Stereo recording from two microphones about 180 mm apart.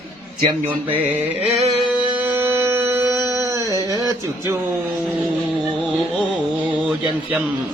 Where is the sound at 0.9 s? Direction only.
5° right (ahead or behind).